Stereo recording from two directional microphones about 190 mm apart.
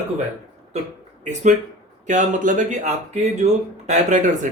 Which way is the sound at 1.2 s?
40° right (ahead or behind).